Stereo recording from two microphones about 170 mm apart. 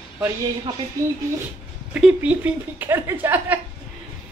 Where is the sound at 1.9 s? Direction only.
5° right (ahead or behind).